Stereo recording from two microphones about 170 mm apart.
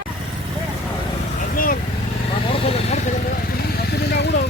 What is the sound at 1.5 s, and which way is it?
Speech, 55° left (ahead or behind).